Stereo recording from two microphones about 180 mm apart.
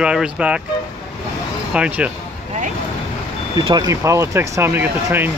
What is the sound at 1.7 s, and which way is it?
Speech, 5° right (ahead or behind).